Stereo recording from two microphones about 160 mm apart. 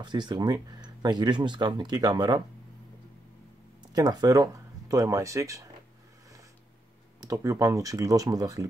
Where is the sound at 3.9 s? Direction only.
25° right (ahead or behind).